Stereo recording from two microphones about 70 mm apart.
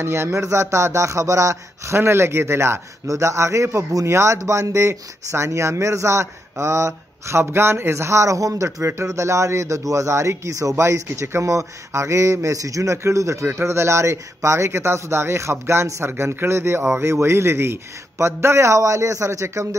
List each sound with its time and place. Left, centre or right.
0.0 s speech: right